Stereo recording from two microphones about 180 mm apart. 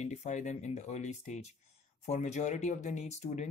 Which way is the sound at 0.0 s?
40° left (ahead or behind).